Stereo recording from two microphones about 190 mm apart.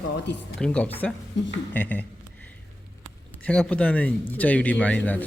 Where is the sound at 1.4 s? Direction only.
70° left (ahead or behind).